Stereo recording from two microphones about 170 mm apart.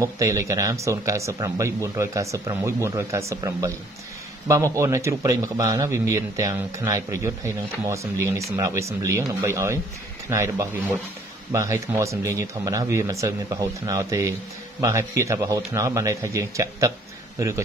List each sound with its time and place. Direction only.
0.0 s a man's voice: 20° right (ahead or behind)